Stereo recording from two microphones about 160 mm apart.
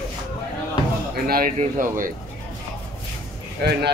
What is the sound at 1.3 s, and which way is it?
Speech, 65° right (ahead or behind).